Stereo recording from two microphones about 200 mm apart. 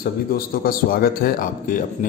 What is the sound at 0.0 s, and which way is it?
A man's voice, 45° left (ahead or behind).